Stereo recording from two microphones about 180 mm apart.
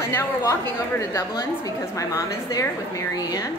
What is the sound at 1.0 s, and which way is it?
A woman's voice, 20° left (ahead or behind).